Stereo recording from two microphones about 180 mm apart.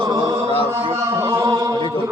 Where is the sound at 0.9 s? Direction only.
15° right (ahead or behind).